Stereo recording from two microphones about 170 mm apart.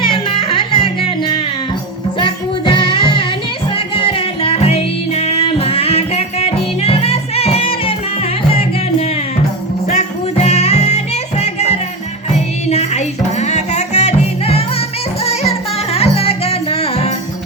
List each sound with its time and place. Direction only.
0.0 s music: 30° left (ahead or behind)
2.1 s music: 30° left (ahead or behind)
10.3 s music: 40° left (ahead or behind)